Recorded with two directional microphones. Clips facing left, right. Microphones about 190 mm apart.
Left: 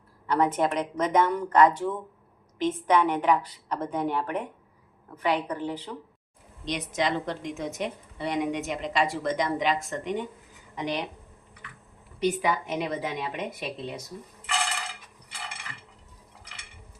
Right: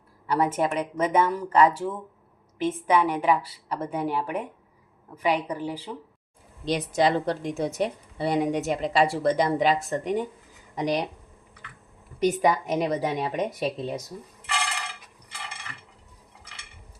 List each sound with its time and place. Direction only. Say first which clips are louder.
0.3 s a woman's voice: even; 10° right (ahead or behind)
6.7 s a woman's voice: right 5 dB; 35° right (ahead or behind)
12.2 s a woman's voice: right 4 dB; 40° right (ahead or behind)